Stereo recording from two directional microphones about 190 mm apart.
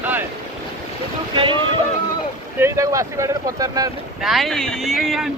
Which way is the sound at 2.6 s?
15° right (ahead or behind).